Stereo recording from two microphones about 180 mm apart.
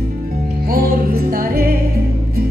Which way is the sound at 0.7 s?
55° right (ahead or behind).